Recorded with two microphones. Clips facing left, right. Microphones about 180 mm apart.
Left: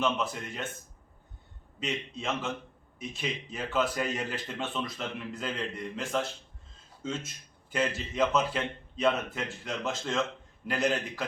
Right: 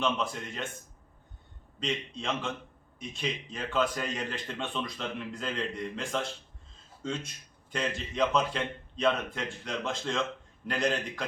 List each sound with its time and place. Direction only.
0.0 s a man's voice: 5° left (ahead or behind)
1.8 s a man's voice: 5° left (ahead or behind)